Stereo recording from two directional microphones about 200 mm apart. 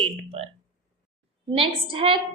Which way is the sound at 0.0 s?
30° right (ahead or behind).